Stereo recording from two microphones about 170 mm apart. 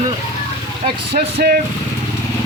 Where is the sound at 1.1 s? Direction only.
65° right (ahead or behind).